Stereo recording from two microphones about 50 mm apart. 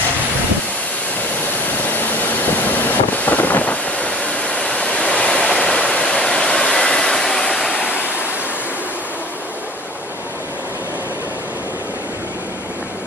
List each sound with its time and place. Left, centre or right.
3.3 s thunder: left
4.1 s waves: left